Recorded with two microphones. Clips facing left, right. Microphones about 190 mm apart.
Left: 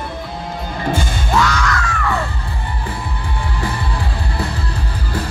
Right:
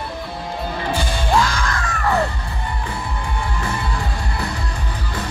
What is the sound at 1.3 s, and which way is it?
Music, 35° right (ahead or behind).